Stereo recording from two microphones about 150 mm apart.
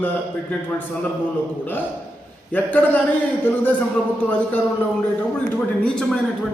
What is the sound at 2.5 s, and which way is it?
A man's voice, 10° left (ahead or behind).